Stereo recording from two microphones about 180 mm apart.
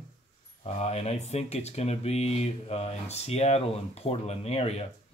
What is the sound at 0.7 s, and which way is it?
Speech, 35° left (ahead or behind).